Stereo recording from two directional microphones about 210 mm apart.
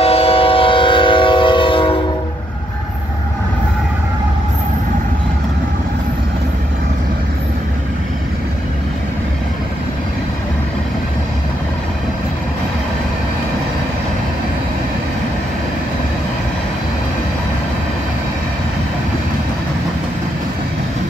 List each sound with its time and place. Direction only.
0.0 s train: 30° left (ahead or behind)